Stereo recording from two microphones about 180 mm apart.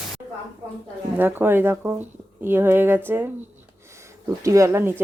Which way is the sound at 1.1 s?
10° right (ahead or behind).